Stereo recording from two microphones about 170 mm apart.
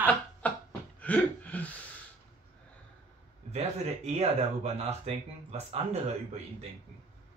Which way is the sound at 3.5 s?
40° right (ahead or behind).